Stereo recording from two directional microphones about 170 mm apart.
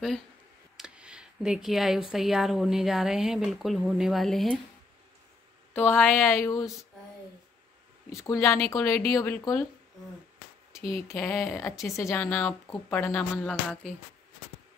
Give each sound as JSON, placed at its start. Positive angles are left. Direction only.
{"t": 0.7, "sound": "speech", "side_deg": -5}
{"t": 5.8, "sound": "speech", "side_deg": 10}
{"t": 8.2, "sound": "speech", "side_deg": 15}
{"t": 11.1, "sound": "speech", "side_deg": 15}